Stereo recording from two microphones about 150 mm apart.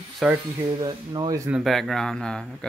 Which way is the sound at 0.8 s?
25° right (ahead or behind).